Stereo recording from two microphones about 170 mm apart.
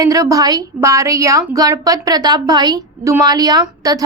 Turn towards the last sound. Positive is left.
turn(degrees=-20)  # may be behind; listen again after turning